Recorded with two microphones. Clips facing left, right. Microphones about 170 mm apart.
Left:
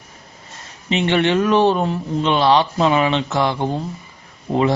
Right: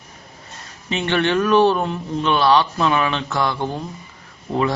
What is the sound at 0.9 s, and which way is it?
Speech, 20° left (ahead or behind).